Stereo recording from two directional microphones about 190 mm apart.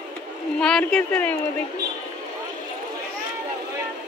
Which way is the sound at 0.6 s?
5° left (ahead or behind).